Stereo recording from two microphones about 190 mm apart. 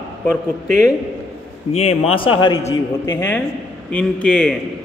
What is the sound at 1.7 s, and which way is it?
Speech, 30° left (ahead or behind).